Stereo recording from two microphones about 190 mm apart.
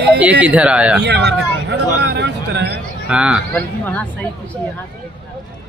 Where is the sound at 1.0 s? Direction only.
65° right (ahead or behind).